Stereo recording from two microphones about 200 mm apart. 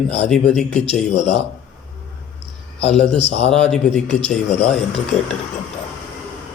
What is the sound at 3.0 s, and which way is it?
Speech, 30° left (ahead or behind).